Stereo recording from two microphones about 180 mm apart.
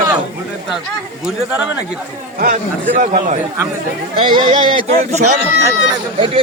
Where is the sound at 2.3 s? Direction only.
50° right (ahead or behind).